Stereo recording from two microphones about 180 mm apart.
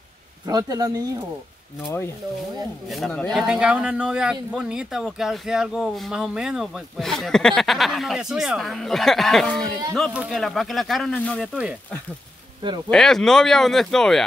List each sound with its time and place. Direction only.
0.5 s speech: 20° right (ahead or behind)
2.9 s speech: 5° left (ahead or behind)
12.6 s speech: 25° right (ahead or behind)
12.9 s speech: centre (ahead or behind)